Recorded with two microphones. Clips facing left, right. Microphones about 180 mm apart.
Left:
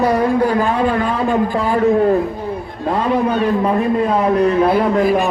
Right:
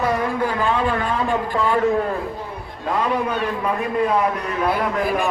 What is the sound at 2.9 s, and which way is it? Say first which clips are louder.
A man's voice: left 5 dB; 30° left (ahead or behind).